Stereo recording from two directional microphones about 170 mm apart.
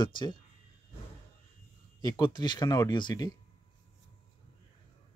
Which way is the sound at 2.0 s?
25° left (ahead or behind).